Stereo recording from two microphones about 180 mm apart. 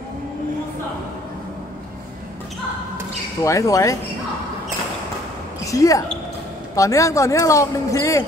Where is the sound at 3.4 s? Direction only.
15° left (ahead or behind).